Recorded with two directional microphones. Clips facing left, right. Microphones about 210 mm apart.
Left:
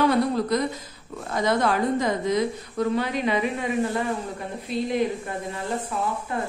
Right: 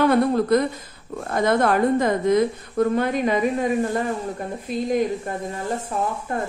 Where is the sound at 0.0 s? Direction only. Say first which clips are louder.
Right 3 dB; 55° right (ahead or behind).